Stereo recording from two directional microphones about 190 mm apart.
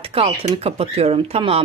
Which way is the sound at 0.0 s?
30° right (ahead or behind).